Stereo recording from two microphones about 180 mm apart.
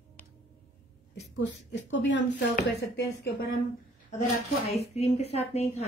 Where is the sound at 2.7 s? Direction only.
70° left (ahead or behind).